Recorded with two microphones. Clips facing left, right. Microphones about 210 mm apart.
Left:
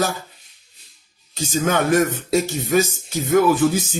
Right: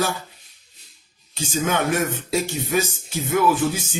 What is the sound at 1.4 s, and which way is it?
Speech, 40° left (ahead or behind).